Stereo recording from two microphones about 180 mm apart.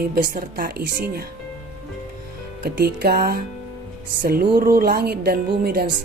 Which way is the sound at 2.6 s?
60° right (ahead or behind).